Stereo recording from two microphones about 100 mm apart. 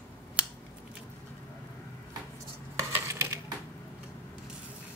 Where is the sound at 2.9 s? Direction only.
30° right (ahead or behind).